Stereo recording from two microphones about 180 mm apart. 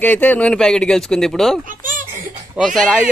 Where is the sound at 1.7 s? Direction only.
50° right (ahead or behind).